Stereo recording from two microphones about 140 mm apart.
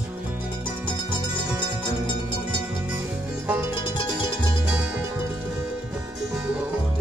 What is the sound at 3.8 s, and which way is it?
Music, 35° left (ahead or behind).